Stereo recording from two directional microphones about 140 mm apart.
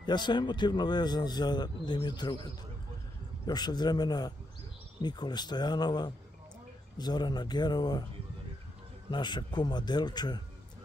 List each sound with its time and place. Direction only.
0.0 s speech: 30° left (ahead or behind)
3.4 s a man's voice: 30° left (ahead or behind)
9.1 s speech: 30° left (ahead or behind)